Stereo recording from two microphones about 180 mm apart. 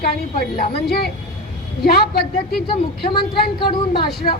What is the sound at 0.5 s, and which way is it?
Speech, 60° left (ahead or behind).